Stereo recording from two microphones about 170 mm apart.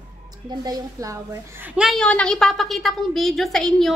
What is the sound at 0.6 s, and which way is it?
A woman's voice, 20° right (ahead or behind).